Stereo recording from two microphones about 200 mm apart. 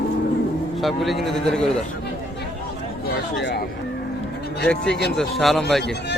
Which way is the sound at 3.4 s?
60° left (ahead or behind).